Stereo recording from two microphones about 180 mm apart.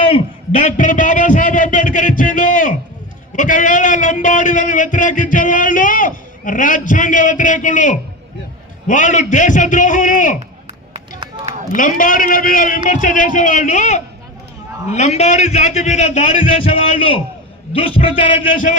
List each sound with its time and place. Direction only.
0.6 s a man's voice: 45° left (ahead or behind)
11.3 s run: 25° right (ahead or behind)
11.8 s a man's voice: 50° left (ahead or behind)
16.5 s a man's voice: 30° left (ahead or behind)